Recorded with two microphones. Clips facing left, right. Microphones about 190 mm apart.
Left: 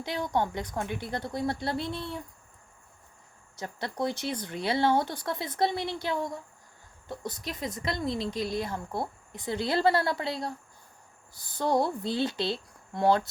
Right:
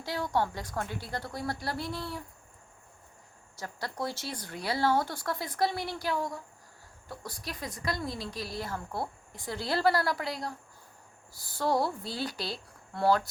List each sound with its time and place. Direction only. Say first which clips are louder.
0.0 s speech: left 1 dB; 20° left (ahead or behind)
3.6 s speech: left 4 dB; 20° left (ahead or behind)